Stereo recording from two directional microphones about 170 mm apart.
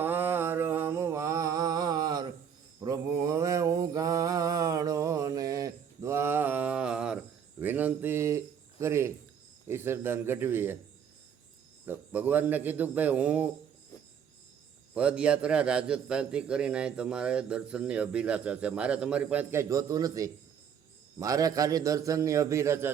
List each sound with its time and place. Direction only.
0.0 s mantra: 10° right (ahead or behind)
9.6 s speech: 15° right (ahead or behind)
11.9 s a man's voice: 10° right (ahead or behind)
14.9 s a man's voice: 5° right (ahead or behind)